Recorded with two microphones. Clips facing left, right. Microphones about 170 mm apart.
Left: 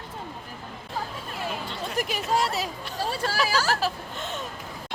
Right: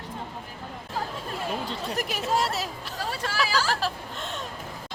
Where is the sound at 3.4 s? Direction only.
45° left (ahead or behind).